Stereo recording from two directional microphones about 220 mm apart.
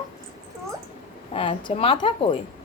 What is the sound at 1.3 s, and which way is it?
Speech, 25° left (ahead or behind).